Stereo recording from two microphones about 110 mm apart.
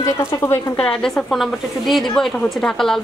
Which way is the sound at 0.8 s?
5° left (ahead or behind).